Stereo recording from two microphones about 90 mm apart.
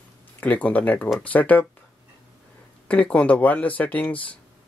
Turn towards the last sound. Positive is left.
turn(degrees=15)  # may be behind; listen again after turning